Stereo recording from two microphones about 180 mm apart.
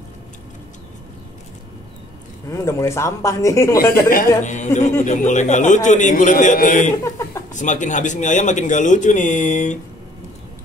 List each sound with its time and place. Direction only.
2.5 s speech: 15° left (ahead or behind)
4.1 s a man's voice: 45° left (ahead or behind)